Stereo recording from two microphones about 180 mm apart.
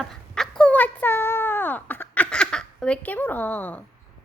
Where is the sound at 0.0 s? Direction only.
Centre (ahead or behind).